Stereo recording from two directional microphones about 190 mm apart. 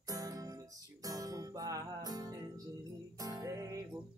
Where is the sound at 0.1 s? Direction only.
20° right (ahead or behind).